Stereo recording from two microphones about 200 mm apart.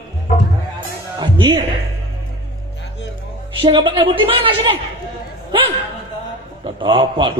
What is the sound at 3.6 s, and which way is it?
A man's voice, 25° right (ahead or behind).